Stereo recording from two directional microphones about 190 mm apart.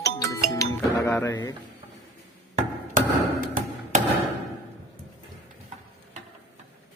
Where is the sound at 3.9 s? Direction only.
40° right (ahead or behind).